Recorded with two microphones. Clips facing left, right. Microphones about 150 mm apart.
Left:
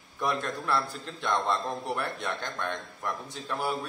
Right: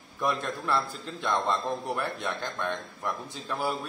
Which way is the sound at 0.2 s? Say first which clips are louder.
Right 1 dB; centre (ahead or behind).